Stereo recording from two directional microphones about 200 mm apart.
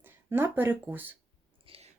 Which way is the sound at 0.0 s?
10° right (ahead or behind).